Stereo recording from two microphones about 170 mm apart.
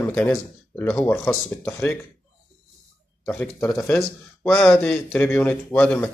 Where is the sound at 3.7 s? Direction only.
15° left (ahead or behind).